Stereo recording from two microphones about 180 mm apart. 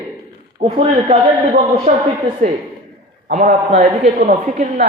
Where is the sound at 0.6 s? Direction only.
30° right (ahead or behind).